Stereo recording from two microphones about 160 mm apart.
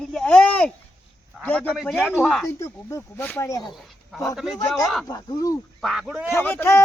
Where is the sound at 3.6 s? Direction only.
Centre (ahead or behind).